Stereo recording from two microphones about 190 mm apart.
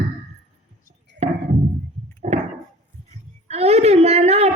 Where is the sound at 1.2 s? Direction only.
35° right (ahead or behind).